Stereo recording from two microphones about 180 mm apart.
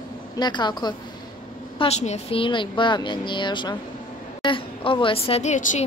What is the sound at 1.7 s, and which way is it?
A woman's voice, 35° left (ahead or behind).